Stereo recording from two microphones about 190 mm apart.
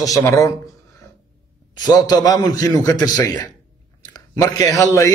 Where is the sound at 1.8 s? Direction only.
20° left (ahead or behind).